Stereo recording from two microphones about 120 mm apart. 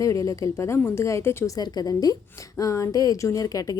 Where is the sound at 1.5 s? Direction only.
35° left (ahead or behind).